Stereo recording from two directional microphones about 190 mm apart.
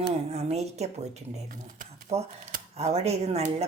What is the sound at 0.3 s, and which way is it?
Speech, 35° right (ahead or behind).